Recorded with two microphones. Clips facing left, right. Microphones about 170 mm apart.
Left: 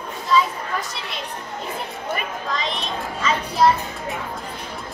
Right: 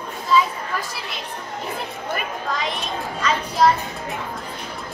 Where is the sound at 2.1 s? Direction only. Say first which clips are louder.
Right 1 dB; centre (ahead or behind).